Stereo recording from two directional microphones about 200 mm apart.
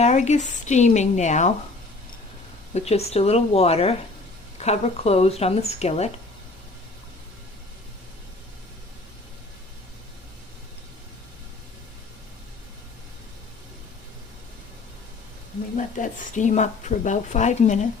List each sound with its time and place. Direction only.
0.0 s a woman's voice: 35° left (ahead or behind)
2.7 s a woman's voice: 30° left (ahead or behind)
16.0 s a woman's voice: 40° left (ahead or behind)